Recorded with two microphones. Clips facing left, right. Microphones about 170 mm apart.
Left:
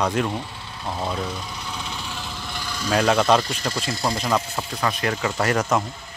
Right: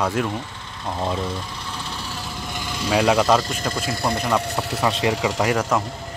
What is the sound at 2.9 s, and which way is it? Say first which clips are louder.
Speech: right 1 dB; 5° right (ahead or behind).